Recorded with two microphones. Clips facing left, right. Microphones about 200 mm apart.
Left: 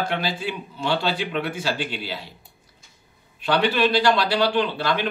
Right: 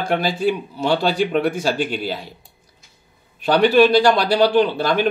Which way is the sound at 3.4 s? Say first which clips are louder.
Right 7 dB; 45° right (ahead or behind).